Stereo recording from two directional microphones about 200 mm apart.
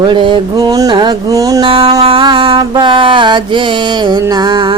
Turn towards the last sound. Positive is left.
turn(degrees=-20)  # may be behind; listen again after turning